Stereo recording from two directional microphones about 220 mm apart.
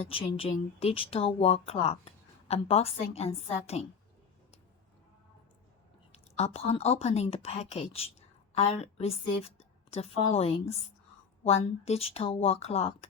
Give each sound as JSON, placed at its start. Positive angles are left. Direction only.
{"t": 0.1, "sound": "speech", "side_deg": 25}
{"t": 6.1, "sound": "a woman's voice", "side_deg": 30}